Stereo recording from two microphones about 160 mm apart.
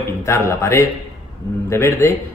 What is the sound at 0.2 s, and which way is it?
A man's voice, 15° left (ahead or behind).